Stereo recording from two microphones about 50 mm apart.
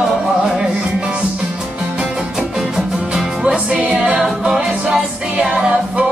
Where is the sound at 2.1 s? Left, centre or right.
Centre.